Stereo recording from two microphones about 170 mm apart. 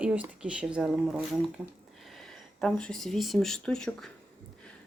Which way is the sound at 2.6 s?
5° left (ahead or behind).